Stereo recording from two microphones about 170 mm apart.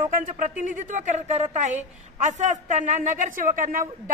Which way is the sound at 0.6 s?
45° right (ahead or behind).